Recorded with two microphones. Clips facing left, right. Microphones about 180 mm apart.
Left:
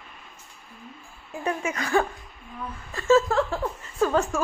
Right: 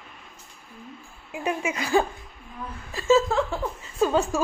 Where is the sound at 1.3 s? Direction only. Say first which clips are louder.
Right 1 dB; 15° right (ahead or behind).